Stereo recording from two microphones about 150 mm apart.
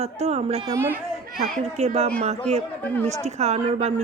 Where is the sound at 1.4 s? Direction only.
50° right (ahead or behind).